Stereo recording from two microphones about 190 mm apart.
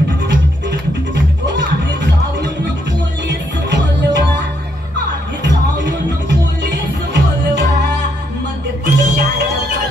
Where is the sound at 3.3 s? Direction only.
65° right (ahead or behind).